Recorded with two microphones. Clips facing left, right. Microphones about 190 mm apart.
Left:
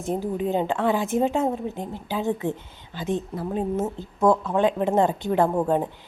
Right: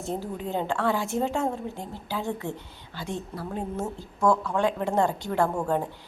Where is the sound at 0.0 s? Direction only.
15° left (ahead or behind).